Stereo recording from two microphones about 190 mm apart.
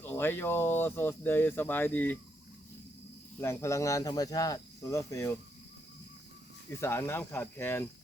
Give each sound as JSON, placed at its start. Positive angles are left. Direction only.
{"t": 0.0, "sound": "speech", "side_deg": 10}
{"t": 3.4, "sound": "speech", "side_deg": 15}
{"t": 6.7, "sound": "speech", "side_deg": 15}